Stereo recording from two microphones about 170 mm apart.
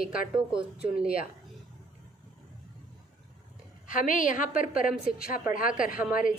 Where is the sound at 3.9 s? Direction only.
50° left (ahead or behind).